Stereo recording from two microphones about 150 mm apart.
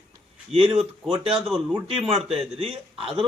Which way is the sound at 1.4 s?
Centre (ahead or behind).